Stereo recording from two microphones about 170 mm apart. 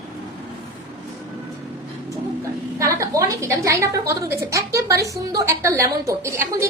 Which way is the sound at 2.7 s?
20° right (ahead or behind).